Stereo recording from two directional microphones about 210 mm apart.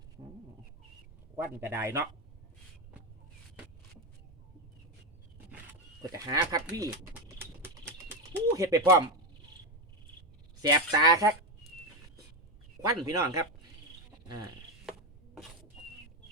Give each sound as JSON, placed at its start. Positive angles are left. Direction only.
{"t": 1.4, "sound": "speech", "side_deg": -10}
{"t": 6.1, "sound": "typing", "side_deg": -15}
{"t": 10.6, "sound": "speech", "side_deg": -15}
{"t": 12.8, "sound": "speech", "side_deg": -15}